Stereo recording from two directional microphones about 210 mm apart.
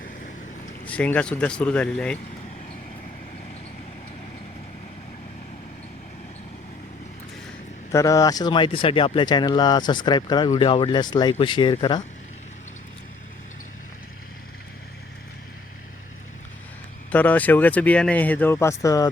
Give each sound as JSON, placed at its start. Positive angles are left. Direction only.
{"t": 0.9, "sound": "speech", "side_deg": 5}
{"t": 7.9, "sound": "speech", "side_deg": 15}
{"t": 17.1, "sound": "speech", "side_deg": 10}